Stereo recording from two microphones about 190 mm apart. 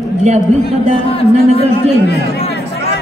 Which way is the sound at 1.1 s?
30° left (ahead or behind).